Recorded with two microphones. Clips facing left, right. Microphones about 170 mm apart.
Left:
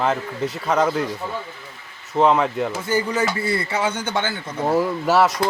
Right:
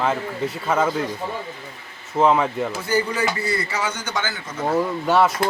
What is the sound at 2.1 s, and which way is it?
Speech, centre (ahead or behind).